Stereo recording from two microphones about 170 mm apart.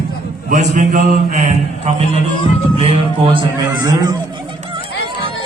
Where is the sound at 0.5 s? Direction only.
50° right (ahead or behind); by 3.4 s 30° right (ahead or behind).